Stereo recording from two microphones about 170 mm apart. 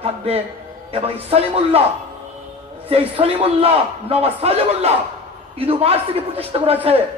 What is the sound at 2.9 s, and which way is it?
A man's voice, 35° right (ahead or behind).